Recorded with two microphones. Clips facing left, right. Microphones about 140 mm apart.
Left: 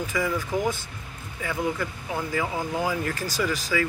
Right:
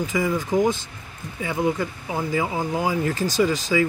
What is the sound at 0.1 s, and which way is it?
Speech, 20° right (ahead or behind).